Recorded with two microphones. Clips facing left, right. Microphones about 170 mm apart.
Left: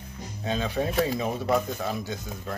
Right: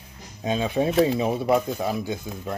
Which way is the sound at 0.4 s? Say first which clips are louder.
Right 4 dB; 15° right (ahead or behind).